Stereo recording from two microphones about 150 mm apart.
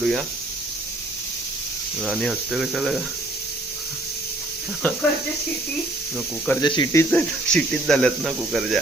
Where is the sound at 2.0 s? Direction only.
Centre (ahead or behind).